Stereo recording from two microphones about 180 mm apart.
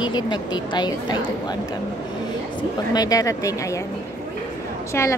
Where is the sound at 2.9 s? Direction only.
20° left (ahead or behind).